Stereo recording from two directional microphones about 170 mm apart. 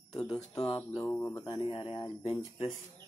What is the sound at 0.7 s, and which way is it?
Speech, 25° left (ahead or behind).